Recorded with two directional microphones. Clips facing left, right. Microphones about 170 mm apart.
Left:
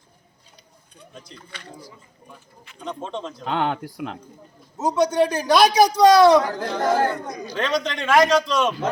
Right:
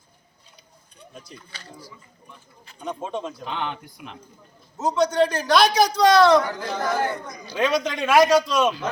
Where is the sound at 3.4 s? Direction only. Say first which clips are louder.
Left 6 dB; 75° left (ahead or behind).